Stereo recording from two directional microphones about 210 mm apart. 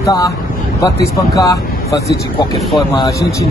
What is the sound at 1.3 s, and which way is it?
Speech, 15° left (ahead or behind).